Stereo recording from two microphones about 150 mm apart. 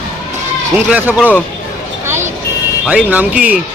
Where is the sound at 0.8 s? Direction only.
5° right (ahead or behind).